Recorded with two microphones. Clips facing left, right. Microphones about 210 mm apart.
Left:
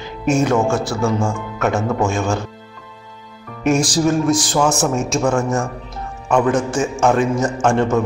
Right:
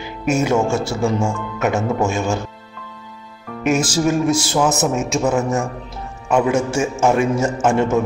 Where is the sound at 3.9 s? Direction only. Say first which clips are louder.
Left 1 dB; 5° right (ahead or behind).